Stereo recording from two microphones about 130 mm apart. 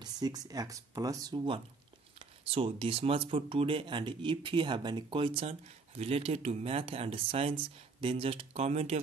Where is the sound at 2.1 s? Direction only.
45° right (ahead or behind).